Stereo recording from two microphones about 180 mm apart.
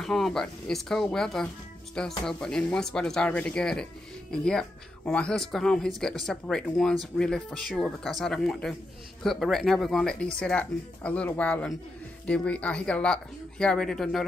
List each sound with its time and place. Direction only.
0.0 s speech: centre (ahead or behind)